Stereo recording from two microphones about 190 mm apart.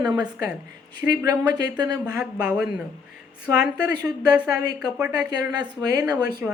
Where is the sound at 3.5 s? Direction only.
5° right (ahead or behind).